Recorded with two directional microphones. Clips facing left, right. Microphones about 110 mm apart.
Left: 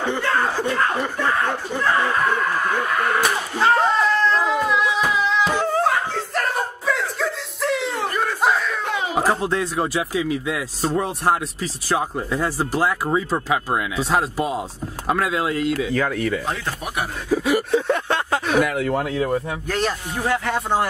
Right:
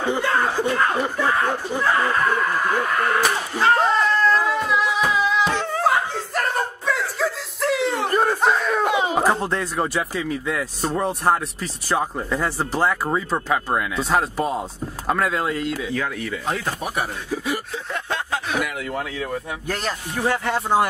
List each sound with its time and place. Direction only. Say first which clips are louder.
0.0 s speech: even; 15° right (ahead or behind)
4.6 s music: left 1 dB; centre (ahead or behind)
5.8 s snicker: even; centre (ahead or behind)
8.1 s a sound: right 4 dB; 35° right (ahead or behind)
9.1 s speech: even; 5° left (ahead or behind)
15.9 s speech: left 5 dB; 55° left (ahead or behind)
17.3 s a sound: left 8 dB; 65° left (ahead or behind); by 19.4 s 40° left (ahead or behind)
20.2 s speech: even; 5° right (ahead or behind)